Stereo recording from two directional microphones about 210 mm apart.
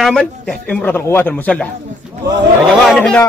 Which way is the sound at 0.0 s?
5° left (ahead or behind).